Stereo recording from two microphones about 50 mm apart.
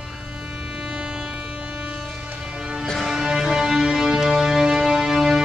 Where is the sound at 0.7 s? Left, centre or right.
Centre.